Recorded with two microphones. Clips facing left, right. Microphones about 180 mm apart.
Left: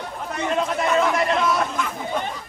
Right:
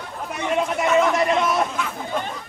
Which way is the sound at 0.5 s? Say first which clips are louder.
Right 2 dB; 5° right (ahead or behind).